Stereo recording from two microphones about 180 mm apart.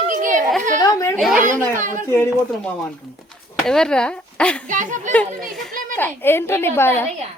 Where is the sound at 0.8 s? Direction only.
20° left (ahead or behind).